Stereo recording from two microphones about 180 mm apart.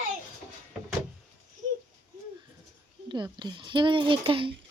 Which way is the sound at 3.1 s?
25° right (ahead or behind).